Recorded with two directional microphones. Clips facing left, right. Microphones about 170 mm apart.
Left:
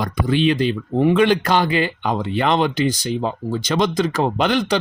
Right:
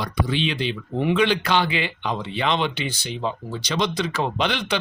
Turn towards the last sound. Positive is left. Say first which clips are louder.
# left 6 dB
turn(degrees=45)  # may be behind; listen again after turning